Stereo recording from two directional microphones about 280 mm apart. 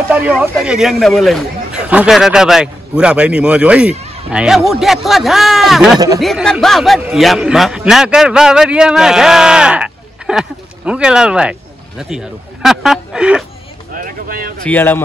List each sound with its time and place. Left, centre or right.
0.1 s a man's voice: centre
12.6 s a man's voice: centre
13.9 s speech: right
14.6 s speech: centre